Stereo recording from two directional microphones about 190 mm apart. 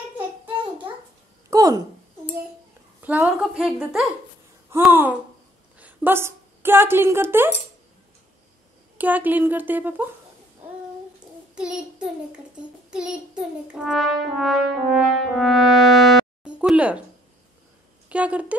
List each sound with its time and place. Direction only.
1.5 s a sound: 20° right (ahead or behind)
3.0 s french horn: 10° right (ahead or behind)
4.8 s a woman's voice: 10° right (ahead or behind)
8.9 s a woman's voice: 10° right (ahead or behind)
11.5 s child singing: 5° right (ahead or behind)
12.9 s french horn: 5° right (ahead or behind)
18.0 s speech: 5° right (ahead or behind)